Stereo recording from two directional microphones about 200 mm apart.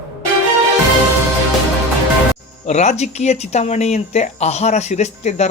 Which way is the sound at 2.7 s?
35° left (ahead or behind).